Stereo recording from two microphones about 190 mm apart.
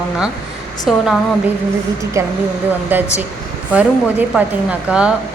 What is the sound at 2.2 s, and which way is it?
Speech, 15° right (ahead or behind).